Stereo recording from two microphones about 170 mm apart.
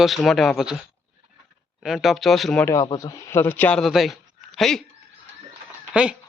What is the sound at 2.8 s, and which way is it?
Speech, 20° left (ahead or behind).